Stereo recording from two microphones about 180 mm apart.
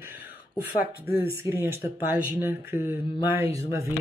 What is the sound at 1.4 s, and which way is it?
Speech, 15° right (ahead or behind).